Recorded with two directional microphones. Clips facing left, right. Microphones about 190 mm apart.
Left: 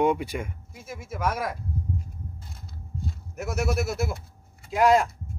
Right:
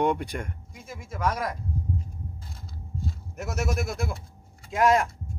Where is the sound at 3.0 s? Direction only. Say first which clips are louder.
Left 2 dB; centre (ahead or behind).